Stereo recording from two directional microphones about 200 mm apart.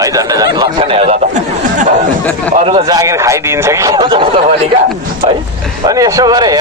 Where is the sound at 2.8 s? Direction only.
15° right (ahead or behind).